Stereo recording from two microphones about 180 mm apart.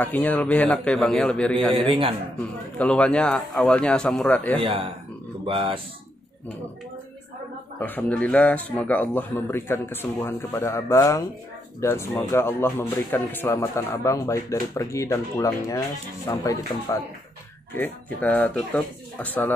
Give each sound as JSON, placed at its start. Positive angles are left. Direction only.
{"t": 0.0, "sound": "speech", "side_deg": 10}
{"t": 1.8, "sound": "speech", "side_deg": -30}
{"t": 2.8, "sound": "a man's voice", "side_deg": 5}
{"t": 4.6, "sound": "speech", "side_deg": -30}
{"t": 7.8, "sound": "speech", "side_deg": 10}